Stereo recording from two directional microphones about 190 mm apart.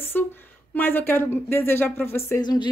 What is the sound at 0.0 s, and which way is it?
Speech, 10° left (ahead or behind).